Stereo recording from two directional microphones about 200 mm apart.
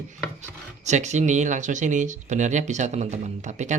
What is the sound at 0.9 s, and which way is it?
Speech, 35° right (ahead or behind).